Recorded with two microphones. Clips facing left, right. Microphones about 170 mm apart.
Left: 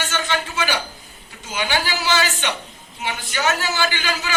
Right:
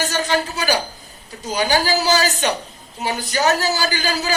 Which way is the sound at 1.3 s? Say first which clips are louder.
Right 5 dB; 40° right (ahead or behind).